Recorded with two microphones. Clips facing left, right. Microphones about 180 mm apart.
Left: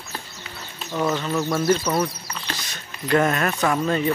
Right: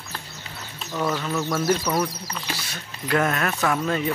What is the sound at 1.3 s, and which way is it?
Speech, 15° left (ahead or behind).